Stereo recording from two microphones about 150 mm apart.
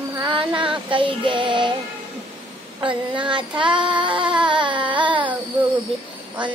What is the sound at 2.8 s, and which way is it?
Child singing, 30° right (ahead or behind).